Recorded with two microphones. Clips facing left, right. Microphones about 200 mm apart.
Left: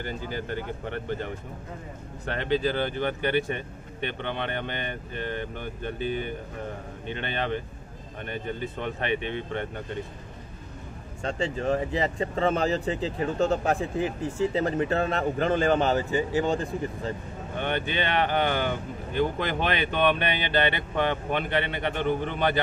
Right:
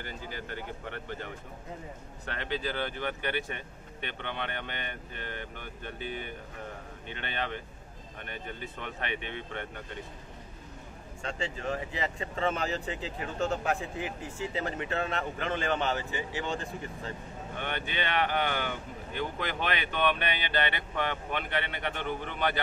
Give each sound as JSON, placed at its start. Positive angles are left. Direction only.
{"t": 2.2, "sound": "speech", "side_deg": 30}
{"t": 7.2, "sound": "speech", "side_deg": 30}
{"t": 11.2, "sound": "speech", "side_deg": 35}